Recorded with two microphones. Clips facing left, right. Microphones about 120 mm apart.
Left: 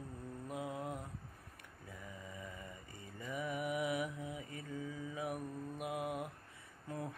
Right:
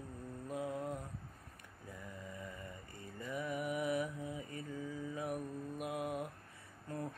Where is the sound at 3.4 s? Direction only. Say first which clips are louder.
Even; 10° left (ahead or behind).